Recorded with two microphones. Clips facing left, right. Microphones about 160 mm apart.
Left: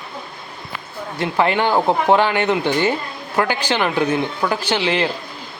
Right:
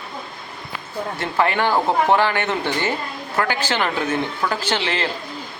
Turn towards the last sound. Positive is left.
turn(degrees=15)  # may be behind; listen again after turning